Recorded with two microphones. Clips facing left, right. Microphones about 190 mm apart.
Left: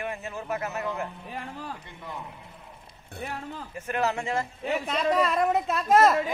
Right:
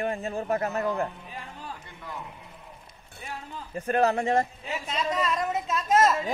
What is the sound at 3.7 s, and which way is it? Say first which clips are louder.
Speech: right 5 dB; 35° right (ahead or behind).